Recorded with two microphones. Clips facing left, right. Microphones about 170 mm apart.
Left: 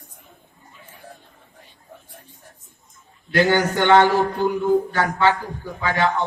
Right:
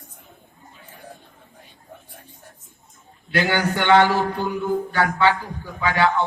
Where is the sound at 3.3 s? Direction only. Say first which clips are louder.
Left 3 dB; 40° left (ahead or behind).